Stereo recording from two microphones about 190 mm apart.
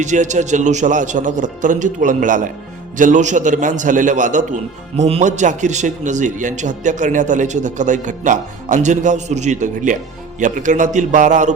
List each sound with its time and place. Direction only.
0.0 s a man's voice: 40° right (ahead or behind)